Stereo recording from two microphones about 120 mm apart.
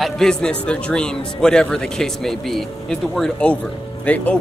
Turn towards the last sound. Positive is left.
turn(degrees=10)  # may be behind; listen again after turning